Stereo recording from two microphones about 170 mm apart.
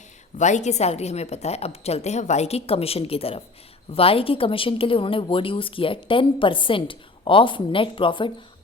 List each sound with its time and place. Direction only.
0.3 s a woman's voice: 45° left (ahead or behind)